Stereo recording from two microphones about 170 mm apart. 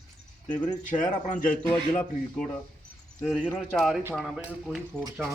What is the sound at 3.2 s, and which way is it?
Speech, 5° right (ahead or behind).